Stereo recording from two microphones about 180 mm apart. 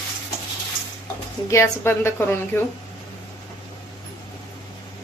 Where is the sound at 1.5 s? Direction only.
15° left (ahead or behind).